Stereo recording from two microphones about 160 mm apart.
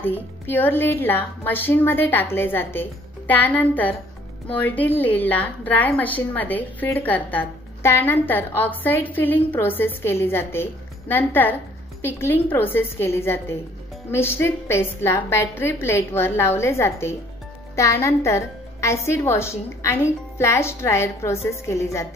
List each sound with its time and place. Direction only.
0.0 s a woman's voice: 10° left (ahead or behind)